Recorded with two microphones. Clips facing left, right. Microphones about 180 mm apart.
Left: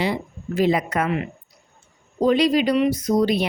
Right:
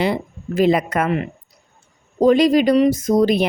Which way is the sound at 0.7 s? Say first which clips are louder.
Right 3 dB; 55° right (ahead or behind).